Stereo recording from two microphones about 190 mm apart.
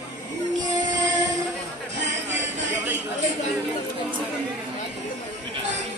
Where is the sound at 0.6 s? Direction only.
20° right (ahead or behind).